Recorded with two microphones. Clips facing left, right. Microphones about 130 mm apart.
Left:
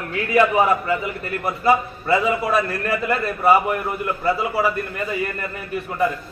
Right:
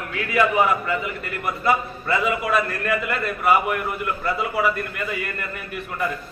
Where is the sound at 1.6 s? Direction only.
30° left (ahead or behind).